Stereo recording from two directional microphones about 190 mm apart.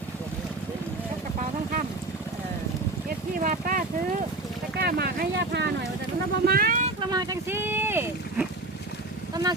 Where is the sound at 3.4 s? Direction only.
45° right (ahead or behind).